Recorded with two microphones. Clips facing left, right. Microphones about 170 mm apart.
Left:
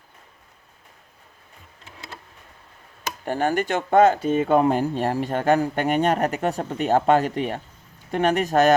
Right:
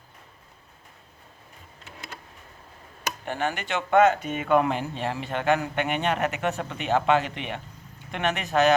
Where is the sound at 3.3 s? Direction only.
45° left (ahead or behind).